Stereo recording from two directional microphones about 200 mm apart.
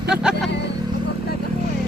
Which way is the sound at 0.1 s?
5° right (ahead or behind).